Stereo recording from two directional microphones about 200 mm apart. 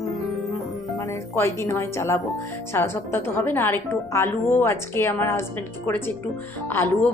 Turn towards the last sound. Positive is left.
turn(degrees=10)  # may be behind; listen again after turning